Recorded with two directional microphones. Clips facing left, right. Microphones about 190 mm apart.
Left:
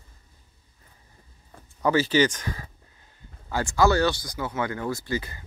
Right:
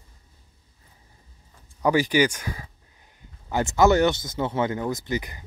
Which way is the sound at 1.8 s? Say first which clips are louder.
Right 1 dB; 15° right (ahead or behind).